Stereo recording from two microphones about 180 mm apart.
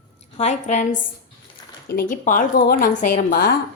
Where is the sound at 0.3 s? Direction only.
40° left (ahead or behind).